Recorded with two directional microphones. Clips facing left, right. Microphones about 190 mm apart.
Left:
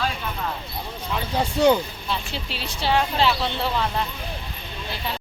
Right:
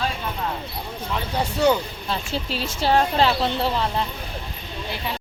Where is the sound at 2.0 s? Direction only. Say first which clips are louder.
Right 3 dB; 40° right (ahead or behind).